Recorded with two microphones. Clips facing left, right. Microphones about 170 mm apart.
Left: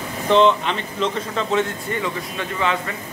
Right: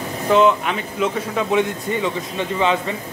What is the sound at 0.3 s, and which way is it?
Speech, 5° right (ahead or behind).